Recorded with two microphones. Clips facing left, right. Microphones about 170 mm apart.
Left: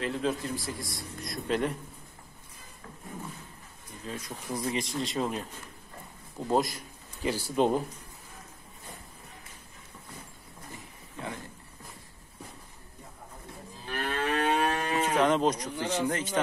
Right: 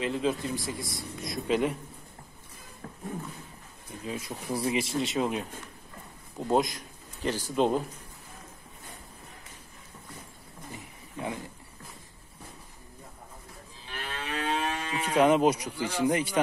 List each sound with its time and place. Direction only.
0.0 s a man's voice: centre (ahead or behind)
4.0 s a man's voice: 10° right (ahead or behind); by 7.8 s 10° left (ahead or behind)
13.8 s moo: 55° left (ahead or behind)
15.1 s speech: 10° right (ahead or behind)